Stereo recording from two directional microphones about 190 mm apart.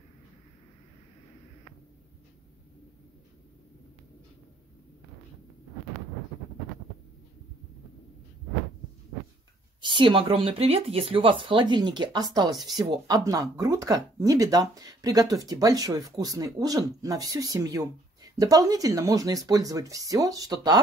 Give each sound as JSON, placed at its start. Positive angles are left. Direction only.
{"t": 9.8, "sound": "speech", "side_deg": -25}